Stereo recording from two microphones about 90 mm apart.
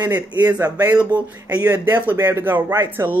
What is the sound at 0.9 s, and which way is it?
Speech, 15° right (ahead or behind).